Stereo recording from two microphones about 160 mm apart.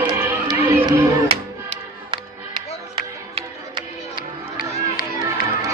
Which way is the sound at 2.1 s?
30° right (ahead or behind).